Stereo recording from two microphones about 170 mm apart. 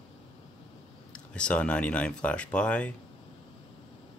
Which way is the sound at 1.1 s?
5° left (ahead or behind).